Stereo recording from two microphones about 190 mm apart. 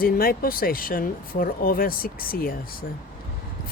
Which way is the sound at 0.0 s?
50° left (ahead or behind).